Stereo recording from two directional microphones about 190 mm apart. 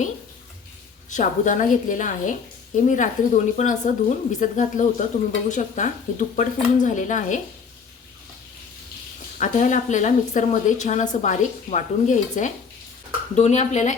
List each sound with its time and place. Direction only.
1.1 s a woman's voice: 40° left (ahead or behind)
9.4 s a woman's voice: 40° left (ahead or behind)